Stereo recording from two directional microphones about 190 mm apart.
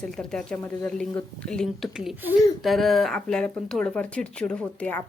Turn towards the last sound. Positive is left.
turn(degrees=10)  # may be behind; listen again after turning